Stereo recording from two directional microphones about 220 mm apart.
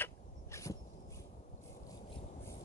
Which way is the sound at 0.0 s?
15° left (ahead or behind).